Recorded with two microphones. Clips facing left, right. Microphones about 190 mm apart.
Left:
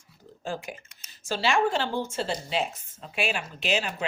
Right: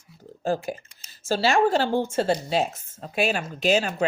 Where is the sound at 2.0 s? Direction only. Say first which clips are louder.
Right 7 dB; 50° right (ahead or behind).